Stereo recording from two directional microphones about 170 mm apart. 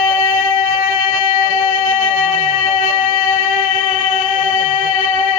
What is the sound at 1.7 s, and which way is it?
Music, 45° left (ahead or behind).